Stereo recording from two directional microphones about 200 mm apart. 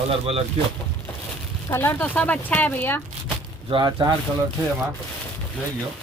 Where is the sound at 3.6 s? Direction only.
25° right (ahead or behind).